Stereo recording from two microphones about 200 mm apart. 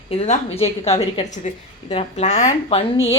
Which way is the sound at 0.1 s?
30° left (ahead or behind).